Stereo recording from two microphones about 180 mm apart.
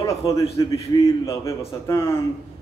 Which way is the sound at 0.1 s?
15° left (ahead or behind).